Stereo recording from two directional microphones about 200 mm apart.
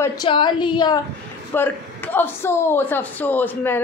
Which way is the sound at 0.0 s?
20° left (ahead or behind).